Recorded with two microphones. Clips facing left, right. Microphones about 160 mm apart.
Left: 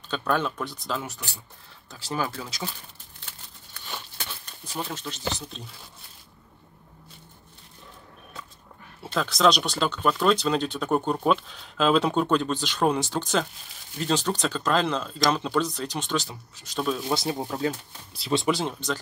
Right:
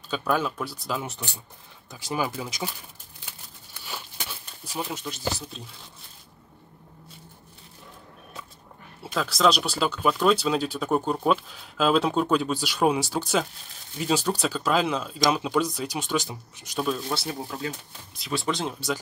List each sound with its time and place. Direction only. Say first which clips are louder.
0.1 s speech: even; 5° right (ahead or behind)
1.0 s speech: right 2 dB; 25° right (ahead or behind)
3.8 s a sound: even; 10° right (ahead or behind)
9.0 s speech: left 1 dB; centre (ahead or behind)
18.1 s speech: left 5 dB; 35° left (ahead or behind)
18.5 s speech: even; centre (ahead or behind)